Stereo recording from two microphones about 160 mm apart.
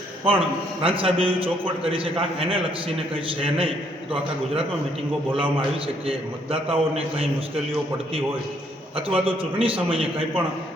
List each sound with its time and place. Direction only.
0.3 s a man's voice: 35° right (ahead or behind)
5.4 s a man's voice: 35° right (ahead or behind)
9.0 s a man's voice: 35° right (ahead or behind)